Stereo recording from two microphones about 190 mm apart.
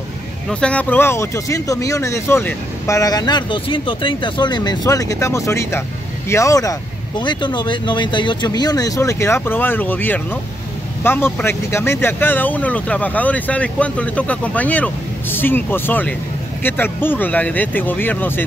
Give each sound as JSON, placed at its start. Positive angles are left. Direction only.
{"t": 0.5, "sound": "speech", "side_deg": 5}